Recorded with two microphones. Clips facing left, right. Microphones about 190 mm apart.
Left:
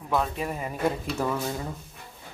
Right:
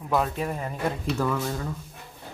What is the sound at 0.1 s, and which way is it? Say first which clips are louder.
Speech: right 2 dB; centre (ahead or behind).